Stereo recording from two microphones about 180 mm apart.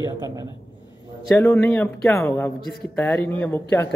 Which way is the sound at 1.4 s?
10° left (ahead or behind).